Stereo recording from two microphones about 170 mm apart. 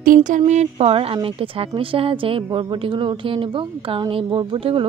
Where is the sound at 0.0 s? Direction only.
50° right (ahead or behind).